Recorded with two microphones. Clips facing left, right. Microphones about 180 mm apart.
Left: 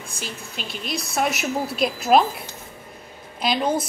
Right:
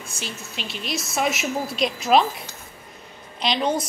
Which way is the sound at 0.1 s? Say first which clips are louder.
Even; 50° left (ahead or behind).